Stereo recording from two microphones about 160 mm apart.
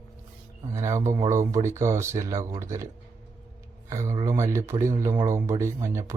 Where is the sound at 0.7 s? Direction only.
20° right (ahead or behind).